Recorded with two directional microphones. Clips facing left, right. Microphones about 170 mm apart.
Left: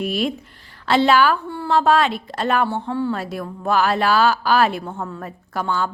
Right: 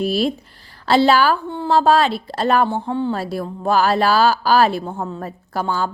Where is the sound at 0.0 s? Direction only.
35° right (ahead or behind).